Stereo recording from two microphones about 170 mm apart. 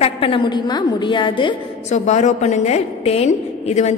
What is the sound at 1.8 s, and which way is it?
A woman's voice, 45° left (ahead or behind).